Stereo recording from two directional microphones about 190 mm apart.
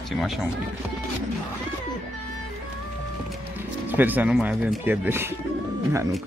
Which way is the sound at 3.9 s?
10° right (ahead or behind).